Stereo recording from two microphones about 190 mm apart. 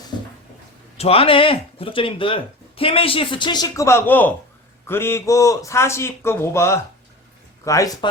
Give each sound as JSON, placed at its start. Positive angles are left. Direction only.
{"t": 0.9, "sound": "a man's voice", "side_deg": 30}